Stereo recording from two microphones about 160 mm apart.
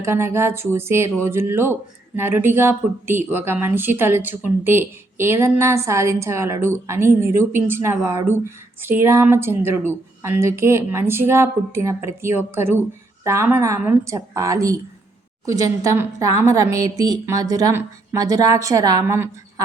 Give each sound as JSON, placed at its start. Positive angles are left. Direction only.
{"t": 0.0, "sound": "a woman's voice", "side_deg": -15}